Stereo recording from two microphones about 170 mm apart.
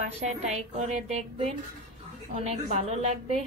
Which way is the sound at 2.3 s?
40° right (ahead or behind).